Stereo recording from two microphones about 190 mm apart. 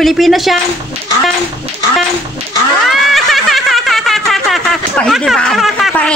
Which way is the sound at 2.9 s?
Centre (ahead or behind).